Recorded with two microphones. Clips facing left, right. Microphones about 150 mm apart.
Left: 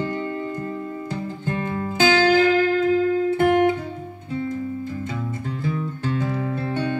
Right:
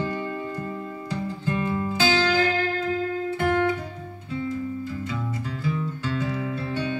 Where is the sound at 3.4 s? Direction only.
25° left (ahead or behind).